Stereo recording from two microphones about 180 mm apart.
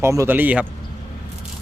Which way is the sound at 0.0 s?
15° right (ahead or behind).